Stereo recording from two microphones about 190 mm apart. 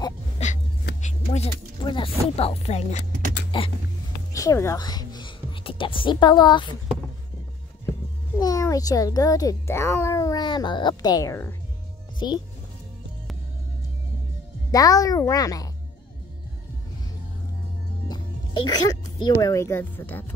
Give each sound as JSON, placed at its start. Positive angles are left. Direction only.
{"t": 0.4, "sound": "dog", "side_deg": 35}
{"t": 1.0, "sound": "speech", "side_deg": 35}
{"t": 3.5, "sound": "a sound", "side_deg": 25}
{"t": 4.3, "sound": "speech", "side_deg": 15}
{"t": 8.4, "sound": "a child's voice", "side_deg": 20}
{"t": 14.7, "sound": "a child's voice", "side_deg": 20}
{"t": 18.0, "sound": "speech", "side_deg": 20}